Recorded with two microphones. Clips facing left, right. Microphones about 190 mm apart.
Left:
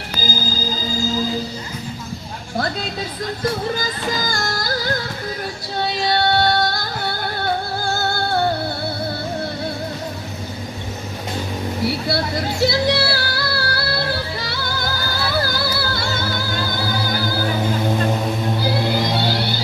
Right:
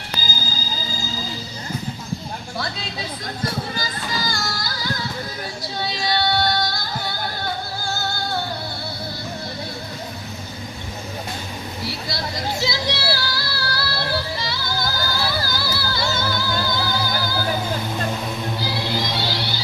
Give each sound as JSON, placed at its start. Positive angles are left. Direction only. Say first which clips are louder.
{"t": 4.3, "sound": "music", "louder": "left 5 dB", "side_deg": 50}
{"t": 12.6, "sound": "music", "louder": "left 9 dB", "side_deg": 60}
{"t": 18.6, "sound": "music", "louder": "left 6 dB", "side_deg": 55}